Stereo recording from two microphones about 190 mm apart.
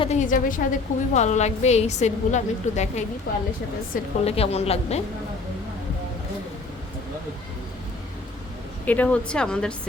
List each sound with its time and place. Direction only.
0.0 s a woman's voice: 35° left (ahead or behind)
4.3 s a woman's voice: 30° left (ahead or behind)
8.9 s speech: 10° left (ahead or behind)